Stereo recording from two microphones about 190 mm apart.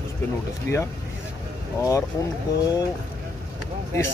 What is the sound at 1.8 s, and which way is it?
Speech, 15° left (ahead or behind).